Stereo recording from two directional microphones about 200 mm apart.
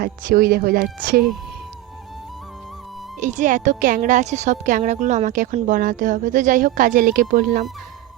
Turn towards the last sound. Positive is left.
turn(degrees=-45)  # may be behind; listen again after turning